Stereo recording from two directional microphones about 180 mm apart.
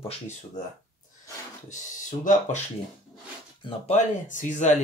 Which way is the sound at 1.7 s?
45° left (ahead or behind).